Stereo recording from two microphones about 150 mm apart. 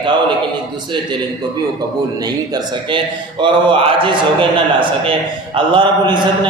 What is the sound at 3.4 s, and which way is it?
A man's voice, 35° right (ahead or behind).